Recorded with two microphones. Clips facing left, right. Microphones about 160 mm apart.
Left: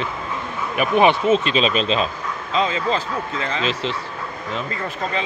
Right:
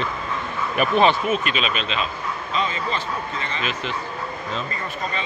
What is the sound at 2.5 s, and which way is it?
Speech, 90° left.